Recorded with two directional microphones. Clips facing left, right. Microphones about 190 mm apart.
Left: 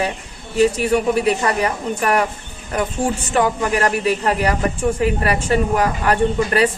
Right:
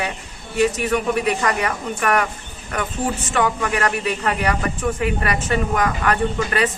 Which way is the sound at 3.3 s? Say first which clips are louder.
Left 3 dB; 35° left (ahead or behind).